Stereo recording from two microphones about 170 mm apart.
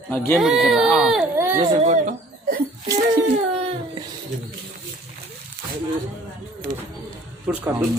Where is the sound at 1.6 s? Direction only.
30° right (ahead or behind).